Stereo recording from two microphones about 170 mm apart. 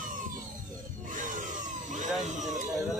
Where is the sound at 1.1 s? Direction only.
50° right (ahead or behind).